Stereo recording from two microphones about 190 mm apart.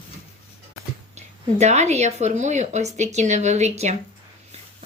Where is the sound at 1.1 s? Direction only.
35° right (ahead or behind).